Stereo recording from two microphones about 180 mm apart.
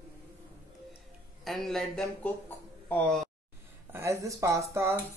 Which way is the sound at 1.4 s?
Centre (ahead or behind).